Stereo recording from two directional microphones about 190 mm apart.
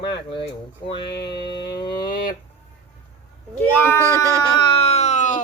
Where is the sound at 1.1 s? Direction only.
60° left (ahead or behind).